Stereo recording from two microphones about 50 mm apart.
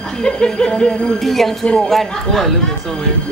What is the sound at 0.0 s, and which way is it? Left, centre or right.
Speech, centre.